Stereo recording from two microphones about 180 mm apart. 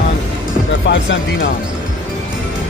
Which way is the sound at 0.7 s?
90° left.